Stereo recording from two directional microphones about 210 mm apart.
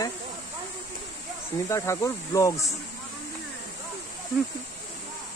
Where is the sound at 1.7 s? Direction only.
15° left (ahead or behind).